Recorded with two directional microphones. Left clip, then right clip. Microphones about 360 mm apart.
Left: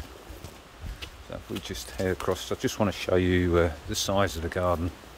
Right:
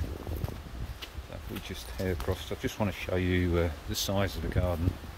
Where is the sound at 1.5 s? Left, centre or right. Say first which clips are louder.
Left 4 dB; centre.